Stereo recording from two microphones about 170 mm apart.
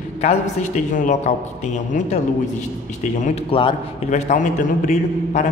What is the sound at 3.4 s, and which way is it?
Speech, 30° left (ahead or behind).